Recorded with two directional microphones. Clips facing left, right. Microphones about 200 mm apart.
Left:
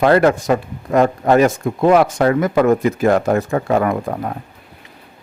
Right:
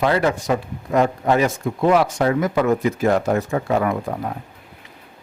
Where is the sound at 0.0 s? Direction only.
55° left (ahead or behind).